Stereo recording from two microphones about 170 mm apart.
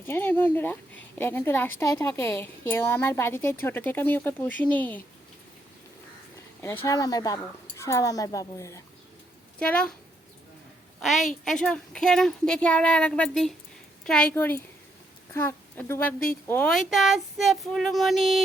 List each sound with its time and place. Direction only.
0.1 s a woman's voice: 10° left (ahead or behind)
6.6 s speech: 15° left (ahead or behind)
9.6 s a woman's voice: 5° left (ahead or behind)
11.0 s a woman's voice: centre (ahead or behind)